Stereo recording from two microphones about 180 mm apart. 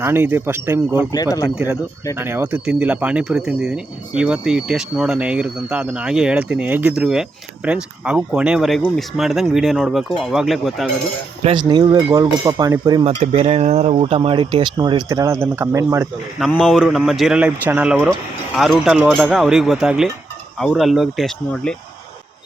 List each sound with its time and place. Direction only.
0.0 s speech: 10° right (ahead or behind)
1.1 s speech: 20° left (ahead or behind)
1.5 s speech: 5° right (ahead or behind)
11.4 s speech: 30° right (ahead or behind)
13.1 s speech: 35° right (ahead or behind); by 16.0 s 15° right (ahead or behind)
16.5 s speech: 5° left (ahead or behind)